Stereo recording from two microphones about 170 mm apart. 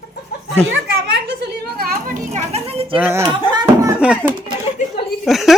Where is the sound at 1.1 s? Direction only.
70° right (ahead or behind).